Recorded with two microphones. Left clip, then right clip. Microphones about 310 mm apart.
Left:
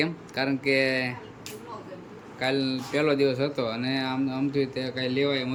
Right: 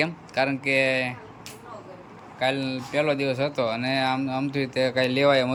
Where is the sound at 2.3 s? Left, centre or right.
Centre.